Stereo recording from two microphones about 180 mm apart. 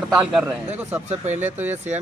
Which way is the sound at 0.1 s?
5° right (ahead or behind).